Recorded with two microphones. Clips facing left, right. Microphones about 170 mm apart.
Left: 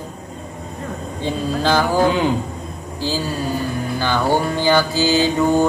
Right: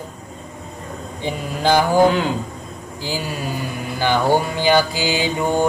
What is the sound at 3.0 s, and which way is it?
Mantra, 15° right (ahead or behind).